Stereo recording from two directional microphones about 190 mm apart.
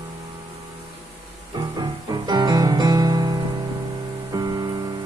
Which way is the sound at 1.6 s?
20° right (ahead or behind).